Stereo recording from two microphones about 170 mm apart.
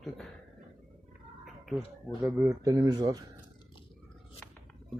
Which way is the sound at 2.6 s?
25° right (ahead or behind).